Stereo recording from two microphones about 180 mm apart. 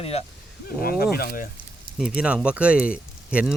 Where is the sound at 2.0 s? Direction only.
5° right (ahead or behind).